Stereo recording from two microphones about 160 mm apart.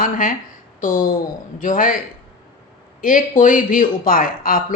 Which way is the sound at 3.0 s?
60° left (ahead or behind).